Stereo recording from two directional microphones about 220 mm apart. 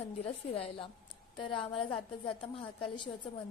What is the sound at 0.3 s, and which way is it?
A woman's voice, 25° left (ahead or behind).